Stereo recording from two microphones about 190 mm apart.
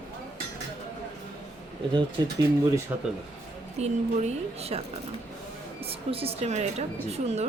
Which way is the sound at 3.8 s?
35° right (ahead or behind).